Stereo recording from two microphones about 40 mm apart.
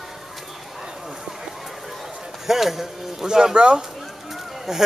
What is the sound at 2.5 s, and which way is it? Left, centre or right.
Speech, centre.